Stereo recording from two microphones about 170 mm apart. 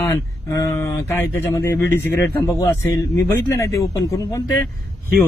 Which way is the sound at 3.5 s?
15° left (ahead or behind).